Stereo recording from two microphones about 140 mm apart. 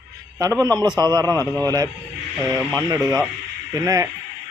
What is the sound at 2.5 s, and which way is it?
Speech, 25° right (ahead or behind).